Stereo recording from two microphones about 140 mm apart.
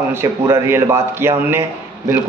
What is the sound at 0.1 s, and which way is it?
A man's voice, 20° right (ahead or behind).